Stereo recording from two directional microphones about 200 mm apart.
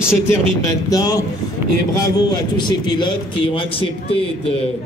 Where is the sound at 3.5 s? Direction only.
25° left (ahead or behind).